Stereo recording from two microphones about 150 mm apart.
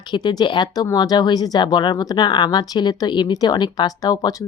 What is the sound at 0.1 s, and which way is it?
Speech, 30° left (ahead or behind).